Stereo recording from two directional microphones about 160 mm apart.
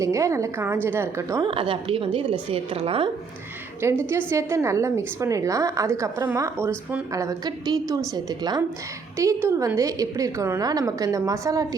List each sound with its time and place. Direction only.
0.0 s a woman's voice: 20° right (ahead or behind)
1.5 s a woman's voice: 30° right (ahead or behind)
3.8 s a woman's voice: 15° right (ahead or behind)